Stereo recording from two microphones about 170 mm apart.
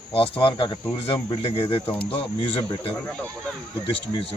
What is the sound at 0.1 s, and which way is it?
Speech, 30° left (ahead or behind).